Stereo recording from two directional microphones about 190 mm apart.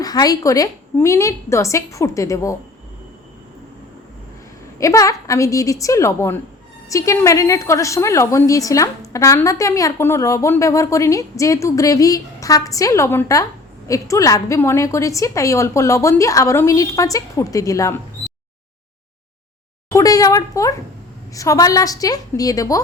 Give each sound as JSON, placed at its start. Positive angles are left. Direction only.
{"t": 0.0, "sound": "a woman's voice", "side_deg": 20}
{"t": 4.8, "sound": "a woman's voice", "side_deg": 15}
{"t": 19.9, "sound": "a woman's voice", "side_deg": 20}